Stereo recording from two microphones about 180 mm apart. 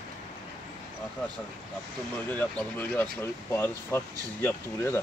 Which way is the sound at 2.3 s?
10° left (ahead or behind).